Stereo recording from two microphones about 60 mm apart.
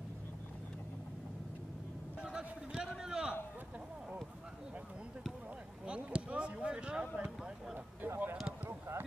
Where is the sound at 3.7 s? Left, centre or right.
Right.